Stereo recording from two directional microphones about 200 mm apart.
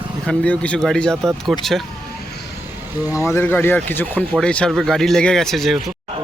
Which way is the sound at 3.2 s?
10° left (ahead or behind).